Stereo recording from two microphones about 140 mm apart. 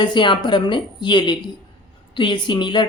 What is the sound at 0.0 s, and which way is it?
A woman's voice, 35° left (ahead or behind).